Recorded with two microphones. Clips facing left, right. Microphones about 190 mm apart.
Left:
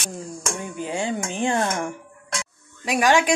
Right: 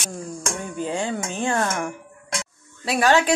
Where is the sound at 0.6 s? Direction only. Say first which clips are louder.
Right 1 dB; 15° left (ahead or behind).